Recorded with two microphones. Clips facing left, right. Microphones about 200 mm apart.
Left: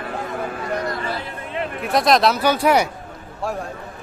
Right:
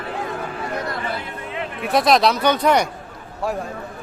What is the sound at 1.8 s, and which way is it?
Speech, centre (ahead or behind).